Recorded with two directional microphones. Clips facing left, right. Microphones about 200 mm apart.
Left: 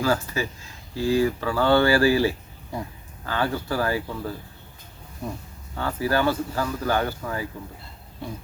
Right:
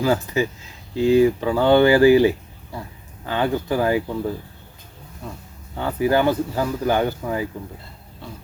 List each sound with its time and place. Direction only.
0.0 s speech: 20° right (ahead or behind)
5.2 s speech: 15° left (ahead or behind)
5.7 s speech: 20° right (ahead or behind)